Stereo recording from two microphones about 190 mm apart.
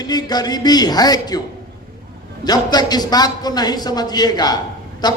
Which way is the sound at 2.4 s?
20° left (ahead or behind).